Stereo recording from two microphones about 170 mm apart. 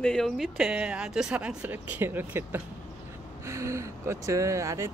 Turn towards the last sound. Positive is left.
turn(degrees=-15)  # may be behind; listen again after turning